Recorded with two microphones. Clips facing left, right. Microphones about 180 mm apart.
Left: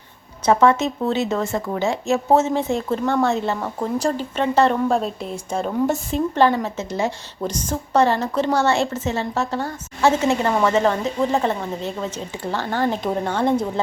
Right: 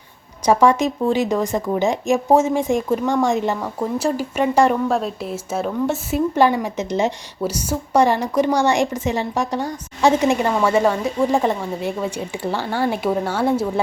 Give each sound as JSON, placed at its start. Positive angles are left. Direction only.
{"t": 0.4, "sound": "a woman's voice", "side_deg": -10}